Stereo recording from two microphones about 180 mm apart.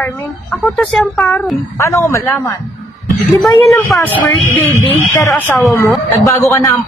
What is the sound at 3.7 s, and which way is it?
A woman's voice, 15° left (ahead or behind).